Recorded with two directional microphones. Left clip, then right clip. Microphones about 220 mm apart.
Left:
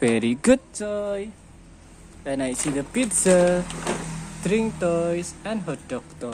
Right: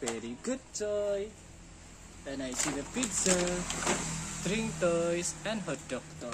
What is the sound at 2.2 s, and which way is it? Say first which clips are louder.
Speech: left 12 dB; 30° left (ahead or behind).